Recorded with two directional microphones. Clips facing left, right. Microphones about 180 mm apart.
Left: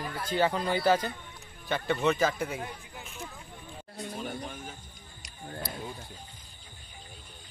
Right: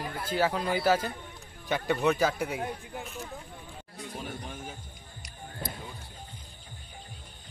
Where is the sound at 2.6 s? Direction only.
45° right (ahead or behind).